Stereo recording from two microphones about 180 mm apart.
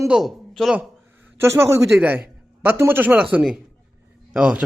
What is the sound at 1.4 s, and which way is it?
A man's voice, 15° right (ahead or behind).